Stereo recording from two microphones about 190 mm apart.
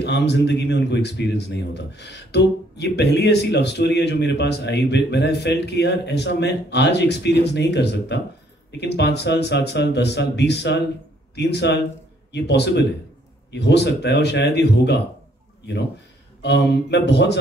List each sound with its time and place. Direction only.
0.0 s speech: 60° left (ahead or behind)
16.4 s speech: 60° left (ahead or behind)